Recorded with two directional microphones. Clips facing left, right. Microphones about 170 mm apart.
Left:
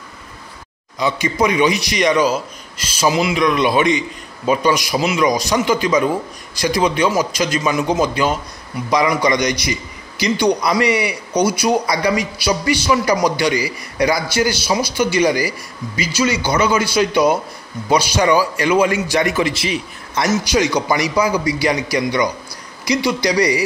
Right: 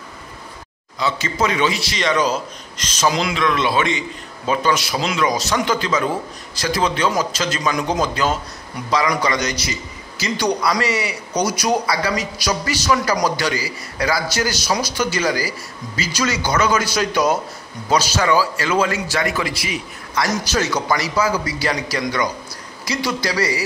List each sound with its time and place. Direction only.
0.9 s a man's voice: 15° left (ahead or behind)
20.3 s a man's voice: 10° left (ahead or behind)